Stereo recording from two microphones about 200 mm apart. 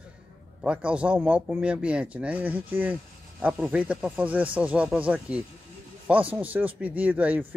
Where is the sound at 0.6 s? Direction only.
5° right (ahead or behind).